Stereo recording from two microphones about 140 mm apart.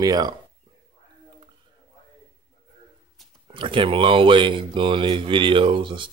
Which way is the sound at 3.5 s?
35° right (ahead or behind).